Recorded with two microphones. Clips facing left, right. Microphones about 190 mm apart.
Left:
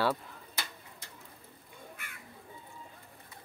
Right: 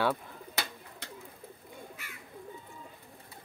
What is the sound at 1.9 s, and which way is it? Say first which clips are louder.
Bird: right 2 dB; 55° left (ahead or behind).